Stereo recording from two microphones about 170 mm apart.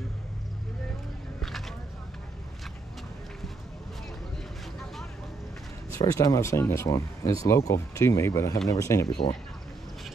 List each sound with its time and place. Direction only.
5.9 s speech: 20° left (ahead or behind)